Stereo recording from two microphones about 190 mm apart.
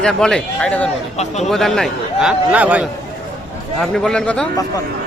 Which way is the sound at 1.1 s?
35° left (ahead or behind).